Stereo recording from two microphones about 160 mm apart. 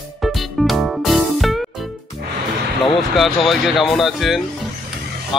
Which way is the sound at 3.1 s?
Centre (ahead or behind).